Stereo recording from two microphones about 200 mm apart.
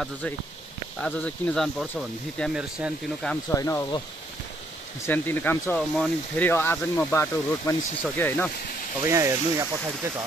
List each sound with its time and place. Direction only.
1.0 s speech: 5° left (ahead or behind)
3.4 s speech: 15° left (ahead or behind)
5.0 s speech: 10° left (ahead or behind)
9.0 s speech: 15° right (ahead or behind)